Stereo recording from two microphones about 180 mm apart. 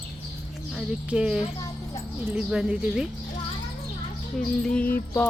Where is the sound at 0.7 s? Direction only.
5° right (ahead or behind).